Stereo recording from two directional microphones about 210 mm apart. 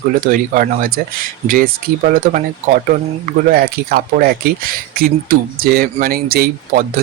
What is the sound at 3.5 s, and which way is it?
Speech, 45° right (ahead or behind).